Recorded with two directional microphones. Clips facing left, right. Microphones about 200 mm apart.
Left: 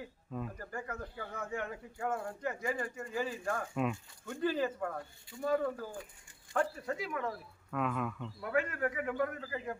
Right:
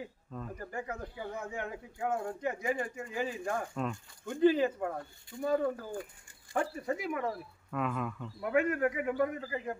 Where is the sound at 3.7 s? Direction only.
5° left (ahead or behind).